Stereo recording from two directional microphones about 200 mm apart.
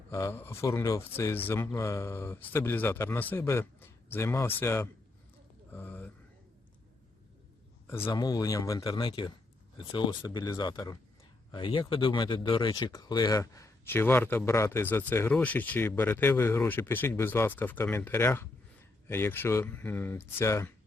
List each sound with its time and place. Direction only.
0.1 s speech: 15° left (ahead or behind)
5.7 s a sound: 10° left (ahead or behind)
7.9 s speech: 10° left (ahead or behind)